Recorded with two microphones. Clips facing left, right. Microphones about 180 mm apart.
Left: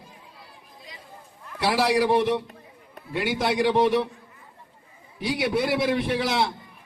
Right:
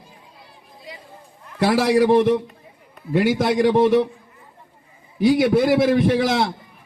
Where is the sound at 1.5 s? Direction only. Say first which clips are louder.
Right 5 dB; 45° right (ahead or behind).